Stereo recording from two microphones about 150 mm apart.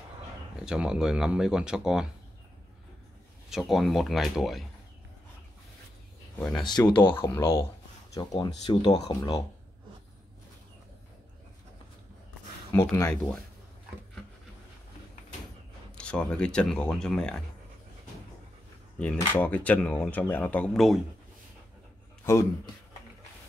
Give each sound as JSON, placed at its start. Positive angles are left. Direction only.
{"t": 0.7, "sound": "speech", "side_deg": -5}
{"t": 3.4, "sound": "speech", "side_deg": 0}
{"t": 6.6, "sound": "speech", "side_deg": 30}
{"t": 7.0, "sound": "speech", "side_deg": 15}
{"t": 12.7, "sound": "speech", "side_deg": 20}
{"t": 15.9, "sound": "speech", "side_deg": 5}
{"t": 19.1, "sound": "speech", "side_deg": 15}
{"t": 22.2, "sound": "speech", "side_deg": 20}